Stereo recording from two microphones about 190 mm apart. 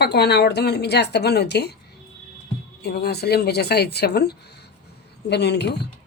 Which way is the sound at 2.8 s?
60° left (ahead or behind).